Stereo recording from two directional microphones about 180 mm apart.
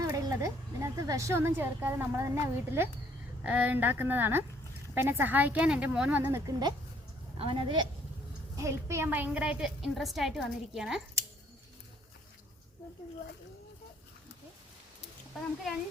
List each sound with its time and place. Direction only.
0.0 s a woman's voice: 20° right (ahead or behind)
8.5 s a woman's voice: 15° right (ahead or behind)